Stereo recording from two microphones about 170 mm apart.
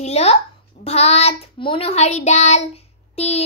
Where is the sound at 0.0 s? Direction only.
40° left (ahead or behind).